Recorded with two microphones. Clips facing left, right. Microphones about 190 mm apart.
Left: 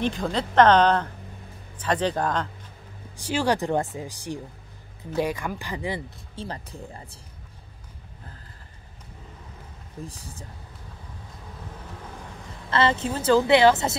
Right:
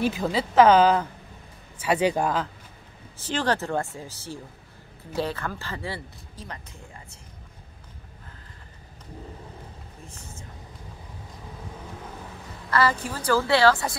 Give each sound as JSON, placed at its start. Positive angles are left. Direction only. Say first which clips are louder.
{"t": 0.0, "sound": "speech", "louder": "right 1 dB", "side_deg": -5}
{"t": 3.2, "sound": "speech", "louder": "left 2 dB", "side_deg": 10}
{"t": 6.3, "sound": "speech", "louder": "left 6 dB", "side_deg": 30}
{"t": 10.0, "sound": "speech", "louder": "left 4 dB", "side_deg": 35}
{"t": 12.6, "sound": "a woman's voice", "louder": "left 1 dB", "side_deg": 25}